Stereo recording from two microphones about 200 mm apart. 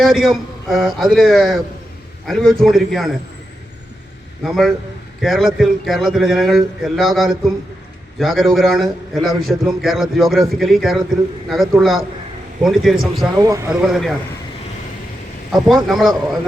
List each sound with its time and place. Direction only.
0.0 s a man's voice: centre (ahead or behind)
4.4 s a man's voice: centre (ahead or behind)
13.4 s speech: 15° right (ahead or behind)
13.7 s a man's voice: centre (ahead or behind)
15.5 s a man's voice: centre (ahead or behind)